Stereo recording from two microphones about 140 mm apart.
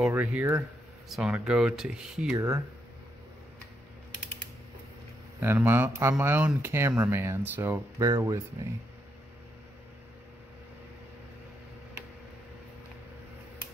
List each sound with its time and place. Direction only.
0.1 s speech: 15° right (ahead or behind)
1.0 s speech: 5° right (ahead or behind)
2.3 s speech: 20° right (ahead or behind)
5.4 s speech: 15° right (ahead or behind)